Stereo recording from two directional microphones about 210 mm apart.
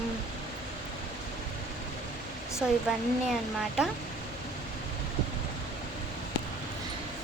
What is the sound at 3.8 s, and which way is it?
Speech, 5° right (ahead or behind).